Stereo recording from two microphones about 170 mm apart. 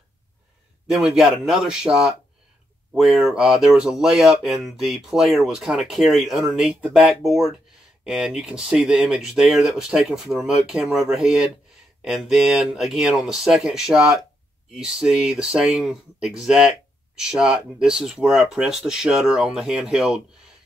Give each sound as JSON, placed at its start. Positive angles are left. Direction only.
{"t": 0.8, "sound": "speech", "side_deg": 0}